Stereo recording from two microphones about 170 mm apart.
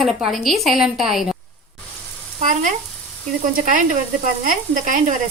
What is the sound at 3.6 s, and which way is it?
Sizzle, 50° right (ahead or behind).